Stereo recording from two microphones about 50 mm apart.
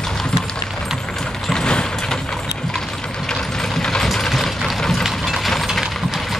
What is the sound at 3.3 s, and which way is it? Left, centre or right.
Vehicle, centre.